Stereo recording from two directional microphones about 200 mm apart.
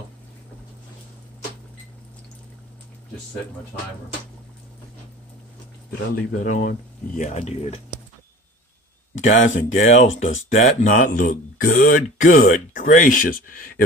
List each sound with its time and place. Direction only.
6.4 s speech: 45° left (ahead or behind)
7.2 s speech: 35° left (ahead or behind)
9.2 s speech: 40° left (ahead or behind)
10.0 s speech: 75° left (ahead or behind)
10.6 s speech: 40° left (ahead or behind)